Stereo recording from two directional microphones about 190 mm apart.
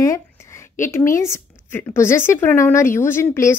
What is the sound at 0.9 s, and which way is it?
A woman's voice, 15° left (ahead or behind).